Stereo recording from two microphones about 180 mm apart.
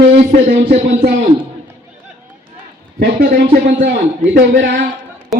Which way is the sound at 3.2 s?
60° right (ahead or behind).